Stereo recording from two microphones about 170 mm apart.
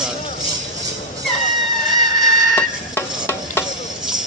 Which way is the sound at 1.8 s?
Centre (ahead or behind).